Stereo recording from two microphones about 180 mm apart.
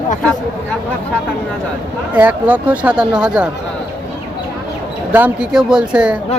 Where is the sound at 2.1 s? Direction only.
10° right (ahead or behind).